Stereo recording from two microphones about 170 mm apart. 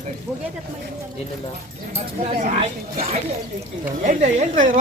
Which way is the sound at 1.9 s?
40° right (ahead or behind).